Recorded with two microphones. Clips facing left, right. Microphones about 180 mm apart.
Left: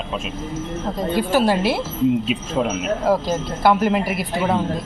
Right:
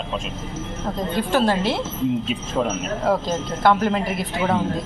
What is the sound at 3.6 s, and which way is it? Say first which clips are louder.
A man's voice: left 1 dB; 5° left (ahead or behind).